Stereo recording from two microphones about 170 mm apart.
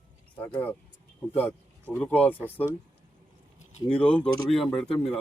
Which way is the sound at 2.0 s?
10° left (ahead or behind).